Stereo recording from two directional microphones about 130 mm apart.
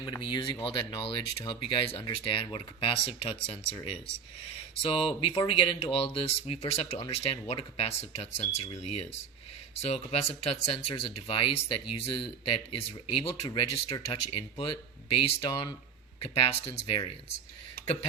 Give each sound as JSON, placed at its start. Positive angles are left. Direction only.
{"t": 0.0, "sound": "speech", "side_deg": 35}
{"t": 4.8, "sound": "speech", "side_deg": 45}